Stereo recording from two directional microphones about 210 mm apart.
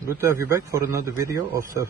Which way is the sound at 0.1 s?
10° right (ahead or behind).